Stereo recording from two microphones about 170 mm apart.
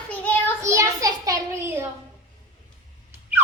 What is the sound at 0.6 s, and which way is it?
A child's voice, 20° right (ahead or behind).